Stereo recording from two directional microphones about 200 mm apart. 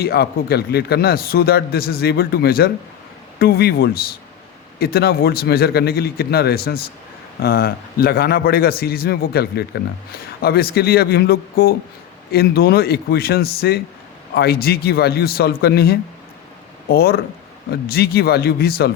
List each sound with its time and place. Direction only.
0.0 s a man's voice: 50° left (ahead or behind)